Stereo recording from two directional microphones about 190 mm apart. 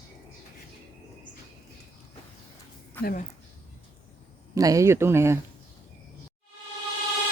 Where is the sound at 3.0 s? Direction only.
45° left (ahead or behind).